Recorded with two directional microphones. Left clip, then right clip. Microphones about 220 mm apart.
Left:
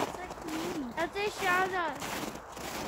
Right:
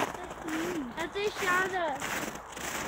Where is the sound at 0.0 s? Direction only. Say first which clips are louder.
Right 2 dB; 5° right (ahead or behind).